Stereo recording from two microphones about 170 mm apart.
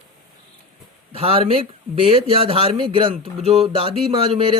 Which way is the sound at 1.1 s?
35° right (ahead or behind).